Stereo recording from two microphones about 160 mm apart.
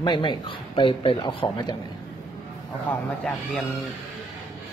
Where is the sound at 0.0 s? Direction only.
30° left (ahead or behind).